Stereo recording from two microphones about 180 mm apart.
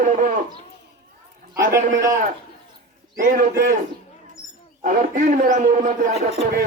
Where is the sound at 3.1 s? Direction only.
50° right (ahead or behind).